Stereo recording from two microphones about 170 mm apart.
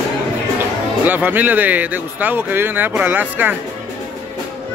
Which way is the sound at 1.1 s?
10° right (ahead or behind).